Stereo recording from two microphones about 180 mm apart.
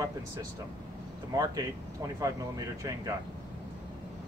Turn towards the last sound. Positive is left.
turn(degrees=-20)  # may be behind; listen again after turning